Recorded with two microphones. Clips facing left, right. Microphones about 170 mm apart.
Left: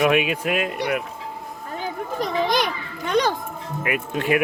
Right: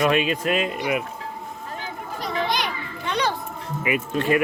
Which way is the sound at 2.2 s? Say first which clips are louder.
Left 4 dB; 45° left (ahead or behind).